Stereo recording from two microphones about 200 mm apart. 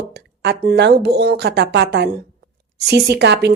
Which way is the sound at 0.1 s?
55° right (ahead or behind).